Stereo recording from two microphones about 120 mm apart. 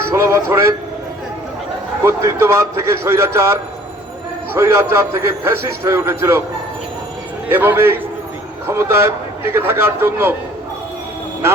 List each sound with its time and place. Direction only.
0.1 s a man's voice: 25° right (ahead or behind)
2.0 s a man's voice: 20° right (ahead or behind)
7.5 s a man's voice: 15° right (ahead or behind)